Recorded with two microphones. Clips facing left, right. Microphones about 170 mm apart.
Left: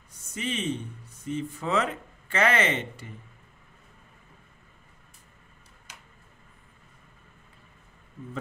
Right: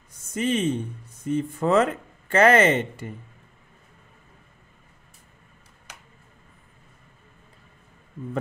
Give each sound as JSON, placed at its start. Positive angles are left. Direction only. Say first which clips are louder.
{"t": 0.3, "sound": "speech", "louder": "right 7 dB", "side_deg": -45}